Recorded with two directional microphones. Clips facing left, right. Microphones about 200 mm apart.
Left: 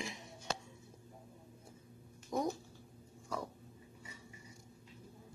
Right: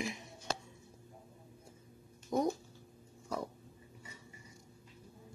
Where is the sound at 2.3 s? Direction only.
30° right (ahead or behind).